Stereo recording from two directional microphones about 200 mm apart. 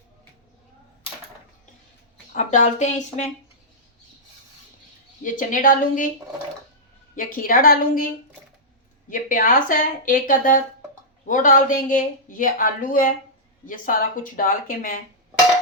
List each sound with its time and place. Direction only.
2.3 s speech: 40° left (ahead or behind)
5.2 s speech: 40° left (ahead or behind)
7.2 s speech: 45° left (ahead or behind)